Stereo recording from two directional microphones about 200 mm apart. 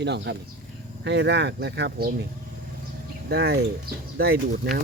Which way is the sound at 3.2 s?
55° right (ahead or behind).